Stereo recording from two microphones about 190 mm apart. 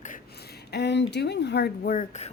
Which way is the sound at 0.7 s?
65° left (ahead or behind).